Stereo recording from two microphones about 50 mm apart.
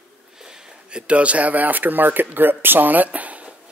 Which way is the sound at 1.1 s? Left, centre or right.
Right.